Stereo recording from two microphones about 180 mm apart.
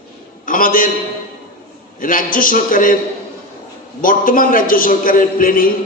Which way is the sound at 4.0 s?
50° left (ahead or behind).